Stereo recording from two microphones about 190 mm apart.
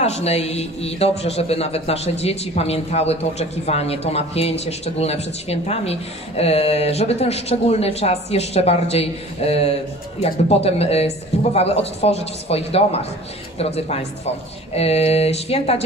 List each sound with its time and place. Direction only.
0.0 s a man's voice: 35° left (ahead or behind)